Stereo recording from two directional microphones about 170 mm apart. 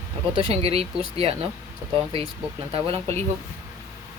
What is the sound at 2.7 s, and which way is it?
Speech, 35° right (ahead or behind).